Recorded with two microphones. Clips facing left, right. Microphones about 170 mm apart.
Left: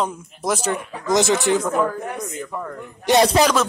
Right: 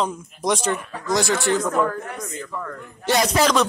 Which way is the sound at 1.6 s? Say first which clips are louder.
Left 1 dB; 5° left (ahead or behind).